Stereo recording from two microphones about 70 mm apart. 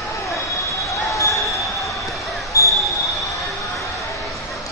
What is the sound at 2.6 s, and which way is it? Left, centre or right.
Basketball bounce, left.